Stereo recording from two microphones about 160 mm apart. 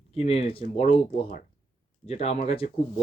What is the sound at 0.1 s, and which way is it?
Speech, 40° left (ahead or behind).